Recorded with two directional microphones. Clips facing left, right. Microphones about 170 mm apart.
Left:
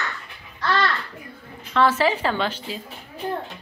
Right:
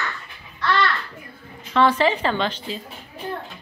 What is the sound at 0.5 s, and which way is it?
Speech, 35° left (ahead or behind).